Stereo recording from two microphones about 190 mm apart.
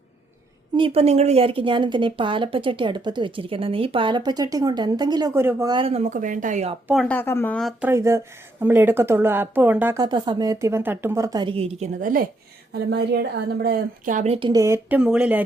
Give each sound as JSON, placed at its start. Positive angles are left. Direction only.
{"t": 0.8, "sound": "a woman's voice", "side_deg": -30}
{"t": 5.7, "sound": "speech", "side_deg": -30}
{"t": 6.9, "sound": "speech", "side_deg": 5}
{"t": 7.8, "sound": "speech", "side_deg": -15}
{"t": 12.7, "sound": "a woman's voice", "side_deg": -60}
{"t": 14.3, "sound": "speech", "side_deg": -20}